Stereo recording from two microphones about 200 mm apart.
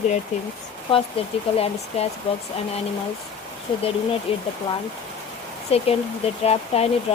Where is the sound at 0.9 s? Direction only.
30° left (ahead or behind).